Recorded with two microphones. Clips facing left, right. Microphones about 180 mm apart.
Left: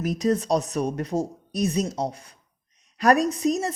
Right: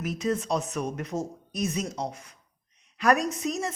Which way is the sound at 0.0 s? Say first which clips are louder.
Left 5 dB; 40° left (ahead or behind).